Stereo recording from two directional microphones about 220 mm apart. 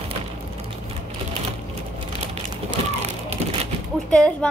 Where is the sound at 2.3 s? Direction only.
30° right (ahead or behind).